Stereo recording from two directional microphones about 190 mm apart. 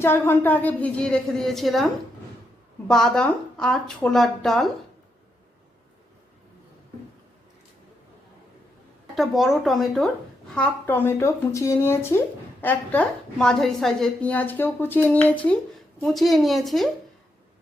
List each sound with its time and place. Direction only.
0.0 s a woman's voice: 10° left (ahead or behind)
9.1 s a woman's voice: centre (ahead or behind)